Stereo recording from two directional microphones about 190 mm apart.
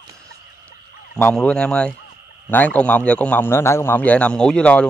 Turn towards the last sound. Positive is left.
turn(degrees=5)  # may be behind; listen again after turning